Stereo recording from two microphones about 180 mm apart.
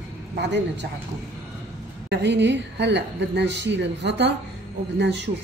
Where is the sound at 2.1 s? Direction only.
75° right (ahead or behind).